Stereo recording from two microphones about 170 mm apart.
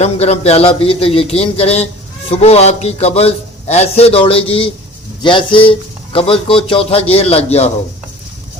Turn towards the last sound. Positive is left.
turn(degrees=35)  # may be behind; listen again after turning